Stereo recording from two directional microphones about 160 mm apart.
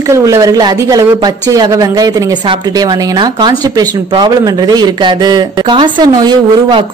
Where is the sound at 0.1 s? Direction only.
20° right (ahead or behind).